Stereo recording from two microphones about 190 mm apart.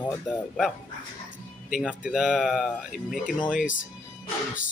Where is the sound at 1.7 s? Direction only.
5° right (ahead or behind).